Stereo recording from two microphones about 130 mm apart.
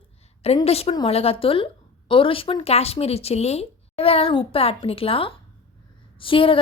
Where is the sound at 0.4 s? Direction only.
50° left (ahead or behind).